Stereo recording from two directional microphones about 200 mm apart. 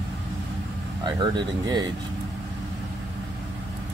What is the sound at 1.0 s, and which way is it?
Speech, 20° right (ahead or behind).